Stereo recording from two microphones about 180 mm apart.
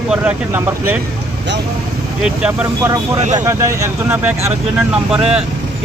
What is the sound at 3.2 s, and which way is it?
Speech, 40° right (ahead or behind).